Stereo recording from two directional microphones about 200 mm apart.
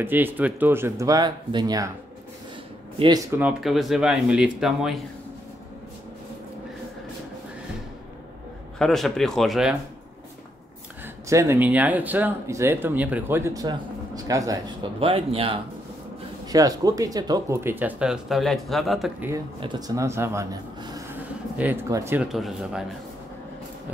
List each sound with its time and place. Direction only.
0.0 s speech: 10° right (ahead or behind)
3.3 s speech: 10° right (ahead or behind)
8.7 s speech: centre (ahead or behind)
11.2 s speech: 15° right (ahead or behind)
19.6 s speech: 20° right (ahead or behind); by 22.8 s 5° right (ahead or behind)